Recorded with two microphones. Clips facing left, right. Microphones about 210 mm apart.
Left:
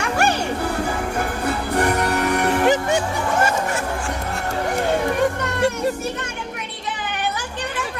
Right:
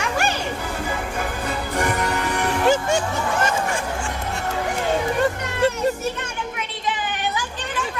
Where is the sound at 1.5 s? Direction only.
60° left (ahead or behind).